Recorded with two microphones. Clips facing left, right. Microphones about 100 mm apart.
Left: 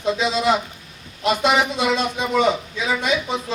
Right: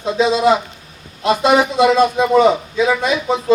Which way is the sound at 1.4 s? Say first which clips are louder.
Right 8 dB; 40° right (ahead or behind).